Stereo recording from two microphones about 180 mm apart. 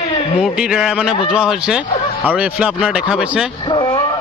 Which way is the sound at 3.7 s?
25° left (ahead or behind).